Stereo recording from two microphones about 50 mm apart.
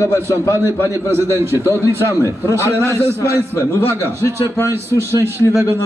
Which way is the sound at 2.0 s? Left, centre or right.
Left.